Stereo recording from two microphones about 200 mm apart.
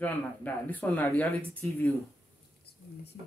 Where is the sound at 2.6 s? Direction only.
55° left (ahead or behind).